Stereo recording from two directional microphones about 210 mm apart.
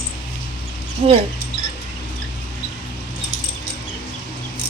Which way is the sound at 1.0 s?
25° right (ahead or behind).